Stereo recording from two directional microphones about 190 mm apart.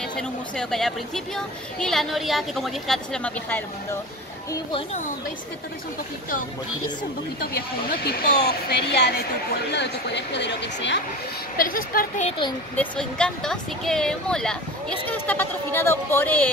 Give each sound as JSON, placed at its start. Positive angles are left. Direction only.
{"t": 0.1, "sound": "speech", "side_deg": 5}
{"t": 7.5, "sound": "speech", "side_deg": 55}
{"t": 11.5, "sound": "a woman's voice", "side_deg": 50}
{"t": 12.3, "sound": "speech", "side_deg": 25}
{"t": 12.7, "sound": "speech", "side_deg": 5}